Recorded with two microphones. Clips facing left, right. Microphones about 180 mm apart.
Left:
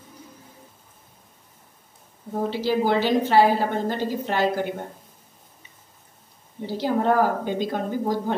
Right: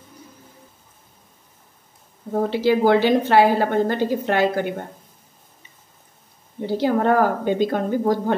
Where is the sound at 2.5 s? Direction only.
60° right (ahead or behind).